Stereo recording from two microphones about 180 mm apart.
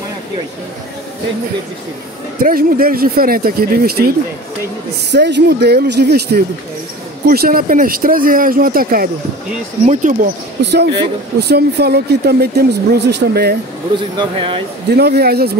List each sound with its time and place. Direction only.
2.4 s speech: 55° right (ahead or behind)
5.1 s speech: 70° right (ahead or behind); by 10.3 s 45° right (ahead or behind)
10.6 s speech: 70° right (ahead or behind)
13.9 s speech: 30° right (ahead or behind)
14.9 s speech: 65° right (ahead or behind)